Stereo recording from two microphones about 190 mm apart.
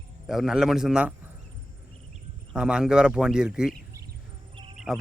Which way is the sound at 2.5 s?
5° right (ahead or behind).